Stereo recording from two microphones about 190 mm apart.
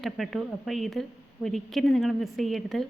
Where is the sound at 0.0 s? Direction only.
Centre (ahead or behind).